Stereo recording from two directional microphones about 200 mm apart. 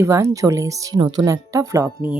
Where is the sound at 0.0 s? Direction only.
15° right (ahead or behind).